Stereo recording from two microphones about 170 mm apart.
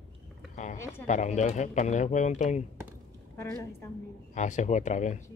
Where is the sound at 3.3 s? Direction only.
15° left (ahead or behind).